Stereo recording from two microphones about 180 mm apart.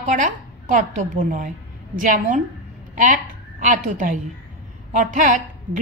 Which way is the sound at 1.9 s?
50° right (ahead or behind).